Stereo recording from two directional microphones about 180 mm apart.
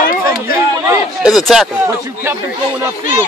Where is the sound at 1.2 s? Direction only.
Centre (ahead or behind).